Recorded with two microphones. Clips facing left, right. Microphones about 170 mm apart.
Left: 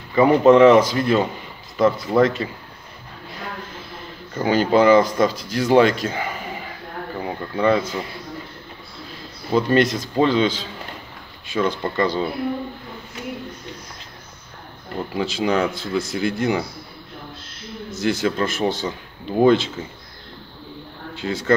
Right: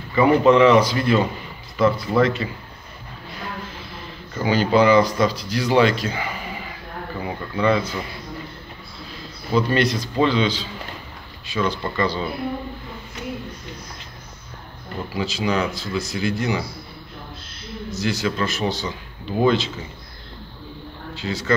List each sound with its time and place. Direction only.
0.1 s speech: 45° left (ahead or behind)
4.3 s speech: 45° left (ahead or behind)
7.5 s speech: 45° left (ahead or behind)
9.5 s speech: 45° left (ahead or behind)
15.1 s speech: 55° left (ahead or behind)
17.9 s speech: 55° left (ahead or behind)
21.1 s speech: 55° left (ahead or behind)